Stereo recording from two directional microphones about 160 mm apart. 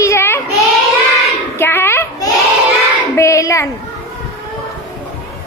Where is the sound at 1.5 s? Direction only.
15° left (ahead or behind).